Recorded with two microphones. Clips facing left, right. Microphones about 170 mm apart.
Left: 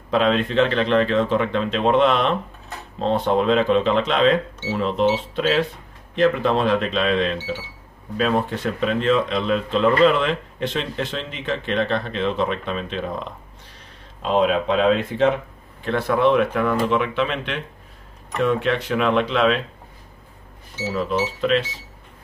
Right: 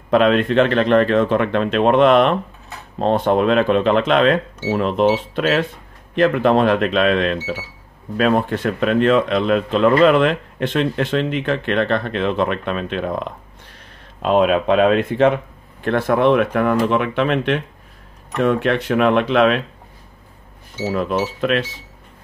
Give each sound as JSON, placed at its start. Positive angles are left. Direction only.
{"t": 0.1, "sound": "speech", "side_deg": -55}
{"t": 20.7, "sound": "speech", "side_deg": -55}